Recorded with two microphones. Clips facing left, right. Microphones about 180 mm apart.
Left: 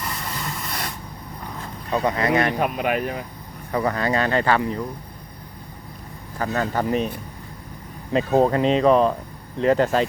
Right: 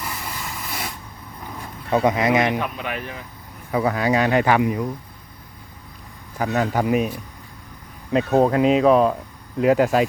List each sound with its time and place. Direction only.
0.0 s spray: 5° right (ahead or behind)
1.9 s speech: 15° right (ahead or behind)
2.6 s speech: 45° left (ahead or behind)
3.7 s speech: 5° right (ahead or behind)
6.4 s speech: 10° right (ahead or behind)
8.1 s speech: centre (ahead or behind)